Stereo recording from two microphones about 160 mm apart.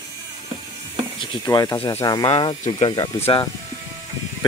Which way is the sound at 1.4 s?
25° left (ahead or behind).